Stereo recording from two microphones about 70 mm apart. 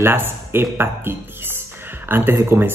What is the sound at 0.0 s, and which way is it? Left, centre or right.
Speech, right.